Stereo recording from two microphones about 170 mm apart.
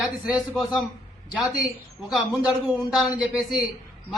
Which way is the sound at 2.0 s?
5° right (ahead or behind).